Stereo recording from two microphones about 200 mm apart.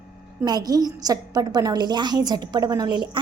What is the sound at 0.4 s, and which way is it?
A woman's voice, 20° right (ahead or behind).